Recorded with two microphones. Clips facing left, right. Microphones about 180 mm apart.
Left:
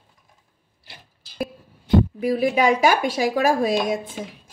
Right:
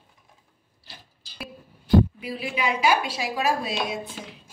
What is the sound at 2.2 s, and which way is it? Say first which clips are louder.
A woman's voice: left 10 dB; 45° left (ahead or behind).